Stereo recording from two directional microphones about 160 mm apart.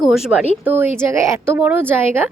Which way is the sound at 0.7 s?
15° right (ahead or behind).